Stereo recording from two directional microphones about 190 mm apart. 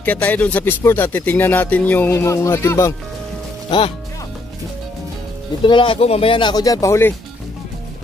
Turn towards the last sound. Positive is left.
turn(degrees=15)  # may be behind; listen again after turning